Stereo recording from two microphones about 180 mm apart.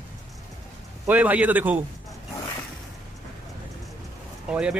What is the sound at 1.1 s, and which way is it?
Speech, 10° right (ahead or behind).